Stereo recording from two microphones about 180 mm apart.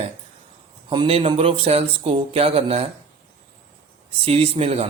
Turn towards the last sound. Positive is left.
turn(degrees=-35)  # may be behind; listen again after turning